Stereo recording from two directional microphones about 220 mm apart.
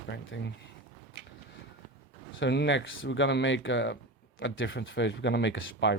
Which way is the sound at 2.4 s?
55° left (ahead or behind).